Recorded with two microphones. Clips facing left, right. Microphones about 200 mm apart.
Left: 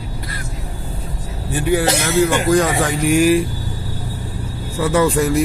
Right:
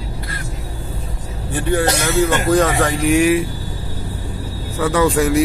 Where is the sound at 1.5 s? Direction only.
5° left (ahead or behind).